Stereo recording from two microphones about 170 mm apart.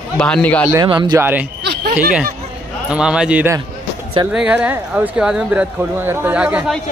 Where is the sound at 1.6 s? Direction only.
75° right (ahead or behind).